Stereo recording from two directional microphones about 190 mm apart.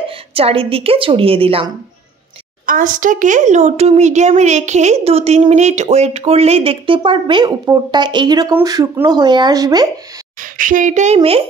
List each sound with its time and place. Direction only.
0.3 s a woman's voice: 30° right (ahead or behind)
2.6 s a woman's voice: 45° right (ahead or behind); by 9.8 s 20° right (ahead or behind)
10.4 s a woman's voice: 45° right (ahead or behind)